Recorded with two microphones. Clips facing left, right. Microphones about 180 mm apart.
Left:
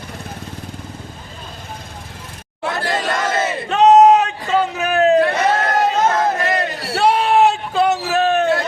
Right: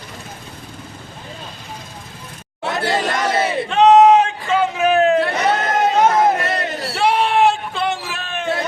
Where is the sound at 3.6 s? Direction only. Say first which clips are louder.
Left 1 dB; 40° left (ahead or behind).